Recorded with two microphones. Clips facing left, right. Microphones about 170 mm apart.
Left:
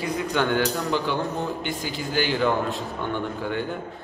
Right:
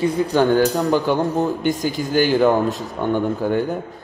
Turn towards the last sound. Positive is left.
turn(degrees=-45)  # may be behind; listen again after turning